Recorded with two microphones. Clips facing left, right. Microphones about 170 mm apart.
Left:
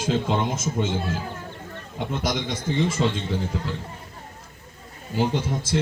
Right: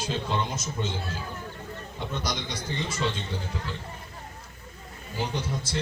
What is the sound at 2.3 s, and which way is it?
Speech, 50° left (ahead or behind).